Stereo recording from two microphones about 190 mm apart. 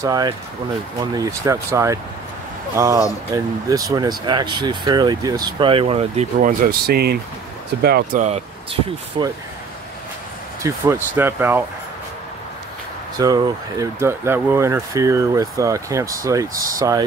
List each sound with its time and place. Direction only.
0.0 s speech: 20° right (ahead or behind)
6.6 s speech: 50° right (ahead or behind)
8.2 s speech: 35° right (ahead or behind)
10.6 s speech: 15° right (ahead or behind)
13.2 s speech: 20° right (ahead or behind)